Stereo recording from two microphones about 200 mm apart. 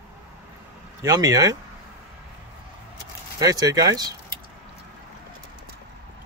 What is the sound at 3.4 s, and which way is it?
Speech, 20° right (ahead or behind).